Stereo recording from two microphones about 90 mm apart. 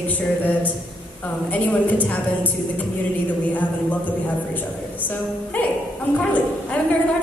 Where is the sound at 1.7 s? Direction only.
15° left (ahead or behind).